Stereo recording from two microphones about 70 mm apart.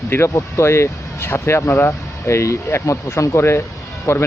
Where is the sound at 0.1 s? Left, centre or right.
Left.